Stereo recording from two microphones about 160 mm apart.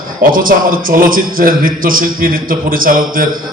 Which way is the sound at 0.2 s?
60° right (ahead or behind).